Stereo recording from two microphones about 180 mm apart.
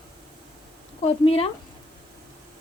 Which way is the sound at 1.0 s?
35° left (ahead or behind).